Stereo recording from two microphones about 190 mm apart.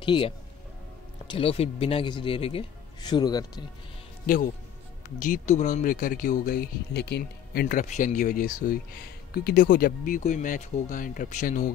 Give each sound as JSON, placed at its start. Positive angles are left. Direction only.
{"t": 0.0, "sound": "speech", "side_deg": 25}
{"t": 5.2, "sound": "speech", "side_deg": 40}